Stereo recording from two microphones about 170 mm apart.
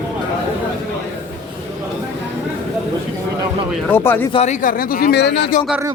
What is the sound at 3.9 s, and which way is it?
Speech, 10° left (ahead or behind).